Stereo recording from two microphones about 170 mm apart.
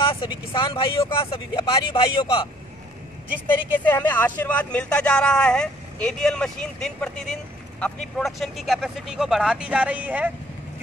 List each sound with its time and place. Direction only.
0.1 s speech: 30° left (ahead or behind)
3.4 s speech: 10° left (ahead or behind); by 10.3 s 10° right (ahead or behind)